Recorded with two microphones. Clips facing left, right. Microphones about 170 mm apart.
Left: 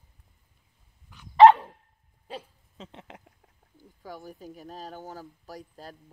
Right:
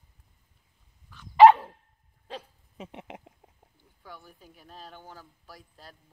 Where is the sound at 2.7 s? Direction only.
20° right (ahead or behind).